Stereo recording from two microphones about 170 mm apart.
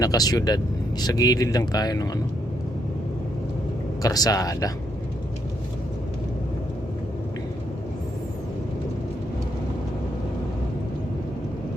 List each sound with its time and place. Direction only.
0.0 s speech: 20° left (ahead or behind)
4.0 s speech: 20° left (ahead or behind)